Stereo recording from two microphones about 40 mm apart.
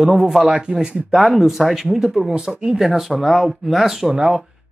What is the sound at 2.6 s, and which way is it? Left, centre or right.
Speech, centre.